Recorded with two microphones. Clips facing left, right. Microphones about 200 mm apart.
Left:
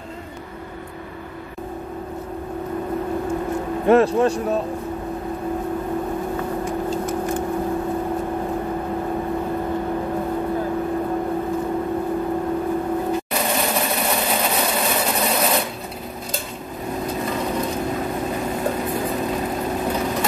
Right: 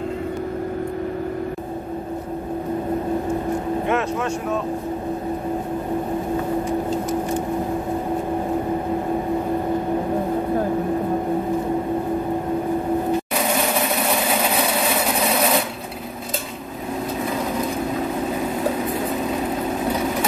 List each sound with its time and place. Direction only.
3.8 s speech: 35° left (ahead or behind)